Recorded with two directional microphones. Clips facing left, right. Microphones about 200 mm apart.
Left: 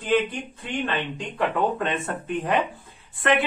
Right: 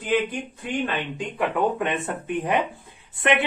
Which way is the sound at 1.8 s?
15° right (ahead or behind).